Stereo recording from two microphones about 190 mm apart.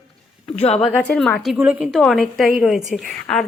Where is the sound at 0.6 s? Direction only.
35° left (ahead or behind).